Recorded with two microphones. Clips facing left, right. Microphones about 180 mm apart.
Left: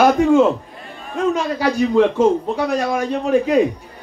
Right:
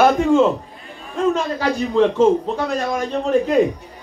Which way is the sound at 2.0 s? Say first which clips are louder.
Right 1 dB; 10° left (ahead or behind).